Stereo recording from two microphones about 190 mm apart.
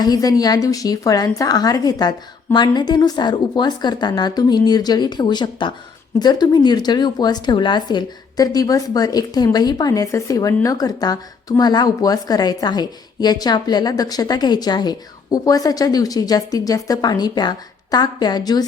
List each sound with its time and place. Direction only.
0.0 s a woman's voice: 20° left (ahead or behind)